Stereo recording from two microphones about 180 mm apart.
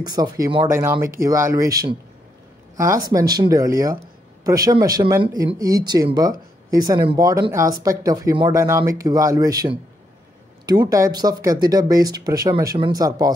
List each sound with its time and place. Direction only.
0.0 s speech: 20° right (ahead or behind)